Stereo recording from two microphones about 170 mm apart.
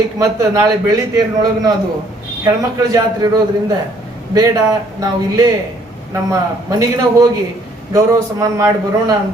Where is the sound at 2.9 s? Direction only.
20° right (ahead or behind).